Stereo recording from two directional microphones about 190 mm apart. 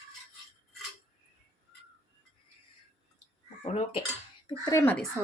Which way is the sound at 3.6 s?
35° left (ahead or behind).